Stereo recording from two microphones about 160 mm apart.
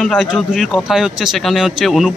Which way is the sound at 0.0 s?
Centre (ahead or behind).